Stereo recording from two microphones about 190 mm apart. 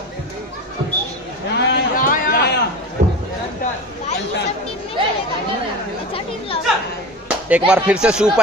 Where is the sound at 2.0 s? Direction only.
45° left (ahead or behind).